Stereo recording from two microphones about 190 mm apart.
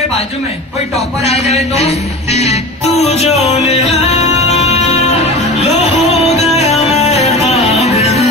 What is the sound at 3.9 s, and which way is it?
Music, 35° left (ahead or behind).